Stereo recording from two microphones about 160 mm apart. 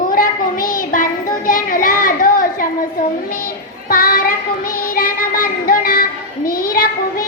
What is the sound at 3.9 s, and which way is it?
Child singing, 60° left (ahead or behind).